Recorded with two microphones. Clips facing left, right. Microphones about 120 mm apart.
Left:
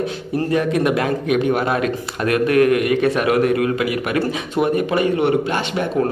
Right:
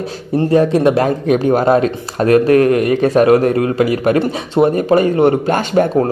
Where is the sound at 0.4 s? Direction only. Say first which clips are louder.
Right 6 dB; 30° right (ahead or behind).